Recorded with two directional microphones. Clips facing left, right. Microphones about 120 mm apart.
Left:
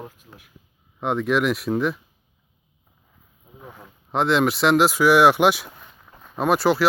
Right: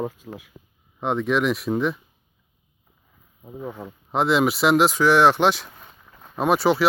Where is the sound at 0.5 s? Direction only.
90° right.